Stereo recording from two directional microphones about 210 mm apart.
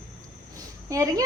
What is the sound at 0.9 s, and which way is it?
Speech, 15° right (ahead or behind).